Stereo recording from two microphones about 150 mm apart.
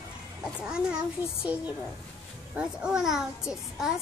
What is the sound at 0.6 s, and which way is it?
A child's voice, 5° right (ahead or behind).